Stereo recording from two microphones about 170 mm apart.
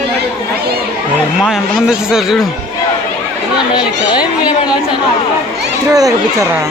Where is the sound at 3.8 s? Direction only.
25° left (ahead or behind).